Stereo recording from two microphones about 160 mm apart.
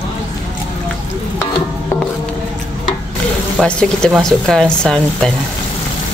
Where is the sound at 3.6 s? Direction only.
5° left (ahead or behind).